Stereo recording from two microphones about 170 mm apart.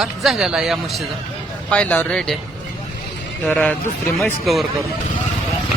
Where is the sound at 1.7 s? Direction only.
10° left (ahead or behind).